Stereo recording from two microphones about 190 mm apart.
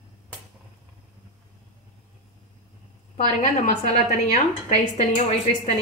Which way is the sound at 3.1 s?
35° left (ahead or behind).